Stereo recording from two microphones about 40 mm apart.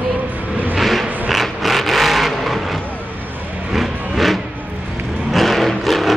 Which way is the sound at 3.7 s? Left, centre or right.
Centre.